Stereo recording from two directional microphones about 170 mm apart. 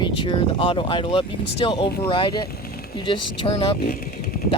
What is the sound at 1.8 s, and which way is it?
Speech, 65° left (ahead or behind).